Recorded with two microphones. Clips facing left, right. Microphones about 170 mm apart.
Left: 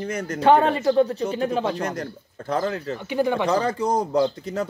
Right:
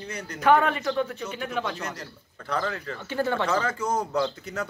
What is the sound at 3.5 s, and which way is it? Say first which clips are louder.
Speech: left 5 dB; 35° left (ahead or behind).